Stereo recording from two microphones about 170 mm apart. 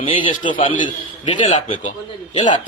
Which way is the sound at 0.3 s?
50° left (ahead or behind).